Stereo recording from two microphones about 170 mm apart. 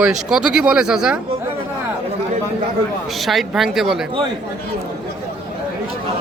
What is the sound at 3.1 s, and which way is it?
Speech, centre (ahead or behind).